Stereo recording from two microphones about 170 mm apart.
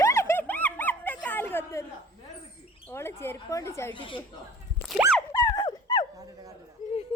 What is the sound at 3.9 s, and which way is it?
Speech, 30° left (ahead or behind).